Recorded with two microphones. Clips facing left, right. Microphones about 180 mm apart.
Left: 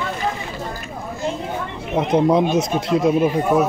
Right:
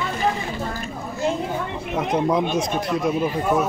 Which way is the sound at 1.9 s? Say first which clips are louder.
Left 5 dB; 25° left (ahead or behind).